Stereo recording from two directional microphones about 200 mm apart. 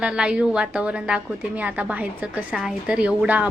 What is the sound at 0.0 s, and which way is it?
A woman's voice, 5° right (ahead or behind).